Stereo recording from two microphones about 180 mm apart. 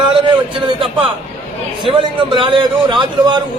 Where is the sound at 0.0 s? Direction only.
25° right (ahead or behind).